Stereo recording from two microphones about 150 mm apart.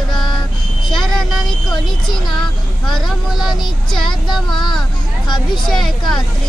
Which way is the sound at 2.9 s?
Centre (ahead or behind).